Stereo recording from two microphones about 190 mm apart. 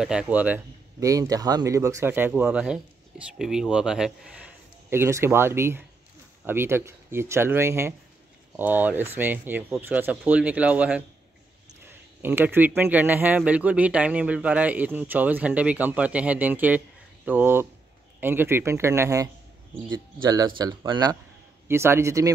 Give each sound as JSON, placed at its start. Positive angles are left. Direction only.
{"t": 0.0, "sound": "a man's voice", "side_deg": -5}